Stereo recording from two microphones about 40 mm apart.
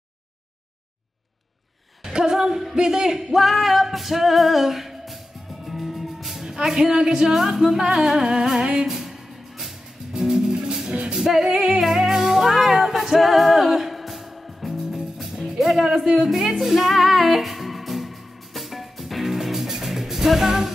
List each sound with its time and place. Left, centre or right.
2.3 s a sound: centre
3.3 s music: centre
6.6 s speech: centre
8.9 s music: centre
10.2 s music: centre
11.1 s speech: centre
11.8 s music: centre